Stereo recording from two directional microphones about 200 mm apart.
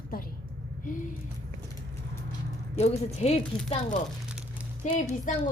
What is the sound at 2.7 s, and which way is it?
Speech, 30° left (ahead or behind).